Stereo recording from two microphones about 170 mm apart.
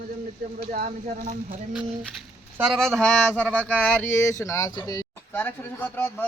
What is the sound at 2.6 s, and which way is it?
Speech, centre (ahead or behind).